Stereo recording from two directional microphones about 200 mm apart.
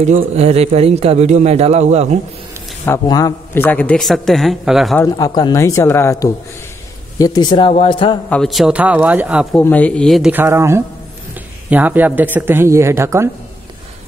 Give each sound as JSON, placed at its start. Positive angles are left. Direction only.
{"t": 0.0, "sound": "speech", "side_deg": -35}
{"t": 2.8, "sound": "a man's voice", "side_deg": 15}
{"t": 4.9, "sound": "speech", "side_deg": 20}
{"t": 8.3, "sound": "a man's voice", "side_deg": 0}
{"t": 9.6, "sound": "a man's voice", "side_deg": 10}